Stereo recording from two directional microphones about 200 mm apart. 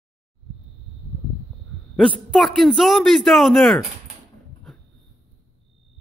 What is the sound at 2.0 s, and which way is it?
A man's voice, centre (ahead or behind).